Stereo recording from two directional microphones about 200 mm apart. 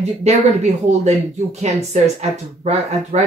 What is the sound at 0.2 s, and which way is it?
Speech, 35° right (ahead or behind).